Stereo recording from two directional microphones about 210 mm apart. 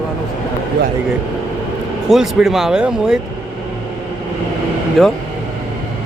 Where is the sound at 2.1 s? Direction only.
Centre (ahead or behind).